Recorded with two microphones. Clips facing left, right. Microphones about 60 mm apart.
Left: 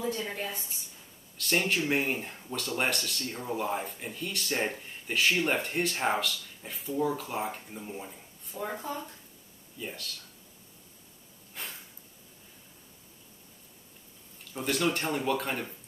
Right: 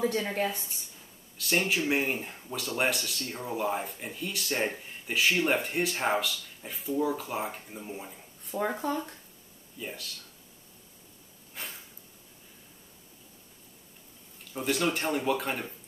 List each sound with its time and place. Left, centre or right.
0.0 s a woman's voice: right
0.5 s speech: centre
8.8 s a woman's voice: right
9.8 s speech: centre
11.6 s a sound: centre
14.5 s speech: centre